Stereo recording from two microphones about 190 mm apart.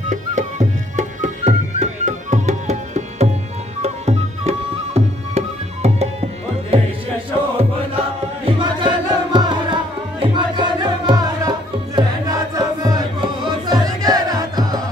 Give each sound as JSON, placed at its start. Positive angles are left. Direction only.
{"t": 0.1, "sound": "music", "side_deg": -40}
{"t": 8.5, "sound": "music", "side_deg": -25}